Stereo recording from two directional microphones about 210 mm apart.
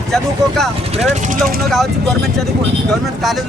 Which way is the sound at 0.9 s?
35° right (ahead or behind).